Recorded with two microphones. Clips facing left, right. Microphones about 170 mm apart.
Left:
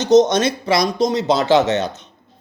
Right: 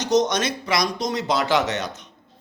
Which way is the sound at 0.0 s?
25° left (ahead or behind).